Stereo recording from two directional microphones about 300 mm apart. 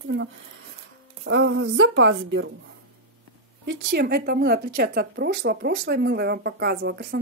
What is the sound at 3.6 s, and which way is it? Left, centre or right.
Speech, right.